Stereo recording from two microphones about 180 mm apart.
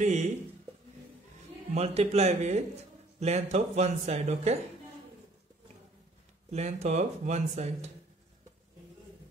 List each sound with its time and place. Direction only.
0.0 s speech: 40° right (ahead or behind)
1.7 s speech: 35° right (ahead or behind)
6.5 s speech: 35° right (ahead or behind)